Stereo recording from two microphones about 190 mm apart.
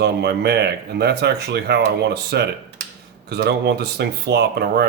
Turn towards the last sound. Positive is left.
turn(degrees=-60)  # may be behind; listen again after turning